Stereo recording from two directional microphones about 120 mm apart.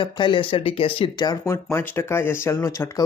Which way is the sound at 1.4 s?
20° left (ahead or behind).